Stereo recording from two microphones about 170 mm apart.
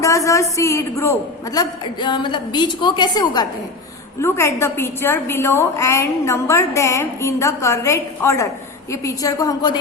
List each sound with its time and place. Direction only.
0.0 s a woman's voice: 20° left (ahead or behind)